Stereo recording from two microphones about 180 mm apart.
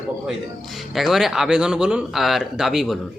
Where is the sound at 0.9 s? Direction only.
Centre (ahead or behind).